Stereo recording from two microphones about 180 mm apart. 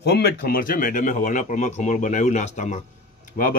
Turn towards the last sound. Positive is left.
turn(degrees=50)  # may be behind; listen again after turning